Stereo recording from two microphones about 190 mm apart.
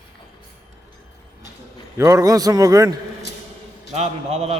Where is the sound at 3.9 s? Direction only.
35° right (ahead or behind).